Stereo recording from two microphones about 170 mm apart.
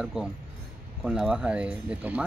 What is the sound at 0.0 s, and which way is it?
Speech, 5° right (ahead or behind).